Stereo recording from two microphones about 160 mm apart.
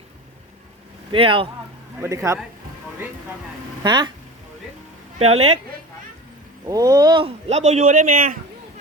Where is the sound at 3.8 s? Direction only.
30° right (ahead or behind).